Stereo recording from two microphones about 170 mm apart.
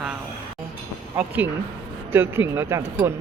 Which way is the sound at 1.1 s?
10° right (ahead or behind).